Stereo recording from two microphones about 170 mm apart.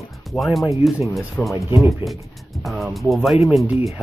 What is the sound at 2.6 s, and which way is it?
Speech, centre (ahead or behind).